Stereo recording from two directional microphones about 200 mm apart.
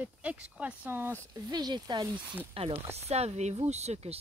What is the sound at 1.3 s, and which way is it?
Speech, 20° right (ahead or behind).